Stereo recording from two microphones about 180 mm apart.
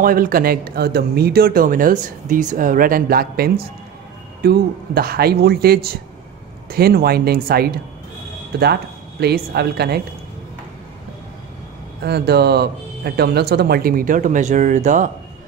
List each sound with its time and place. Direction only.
0.0 s speech: 50° right (ahead or behind)
9.2 s speech: 60° right (ahead or behind)
12.0 s speech: 60° right (ahead or behind); by 15.0 s 45° right (ahead or behind)